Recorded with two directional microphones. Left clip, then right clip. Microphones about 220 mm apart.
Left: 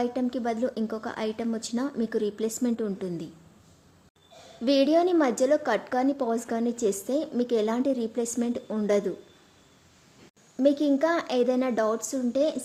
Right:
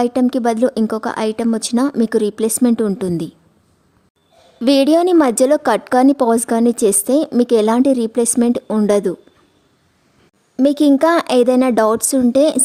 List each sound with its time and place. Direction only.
0.0 s a woman's voice: 50° right (ahead or behind)
4.6 s a woman's voice: 50° right (ahead or behind)
10.6 s a woman's voice: 50° right (ahead or behind)